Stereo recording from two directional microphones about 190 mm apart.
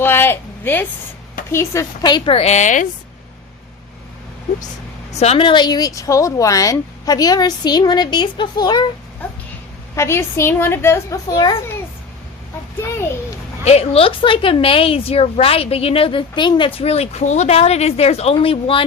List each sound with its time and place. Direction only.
0.0 s speech: 10° left (ahead or behind); by 2.8 s 40° left (ahead or behind)
5.1 s speech: 35° left (ahead or behind)
9.9 s a woman's voice: 15° left (ahead or behind)
13.7 s a woman's voice: 30° left (ahead or behind)